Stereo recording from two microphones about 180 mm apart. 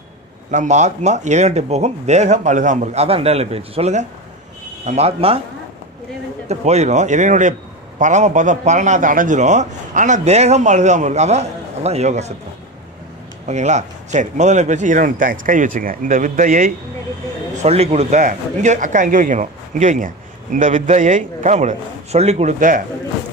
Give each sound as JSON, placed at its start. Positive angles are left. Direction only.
{"t": 0.5, "sound": "a man's voice", "side_deg": -40}
{"t": 6.5, "sound": "a man's voice", "side_deg": -35}
{"t": 13.5, "sound": "speech", "side_deg": -40}
{"t": 17.6, "sound": "speech", "side_deg": -35}